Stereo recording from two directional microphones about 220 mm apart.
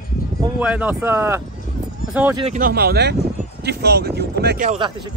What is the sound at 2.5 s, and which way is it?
Speech, 45° right (ahead or behind).